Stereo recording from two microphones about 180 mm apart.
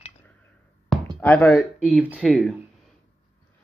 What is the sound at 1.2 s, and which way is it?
Speech, 5° left (ahead or behind).